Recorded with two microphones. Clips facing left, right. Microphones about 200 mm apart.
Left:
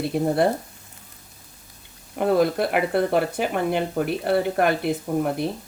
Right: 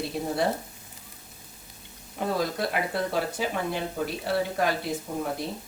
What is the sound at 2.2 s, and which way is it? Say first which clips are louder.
Speech: left 8 dB; 60° left (ahead or behind).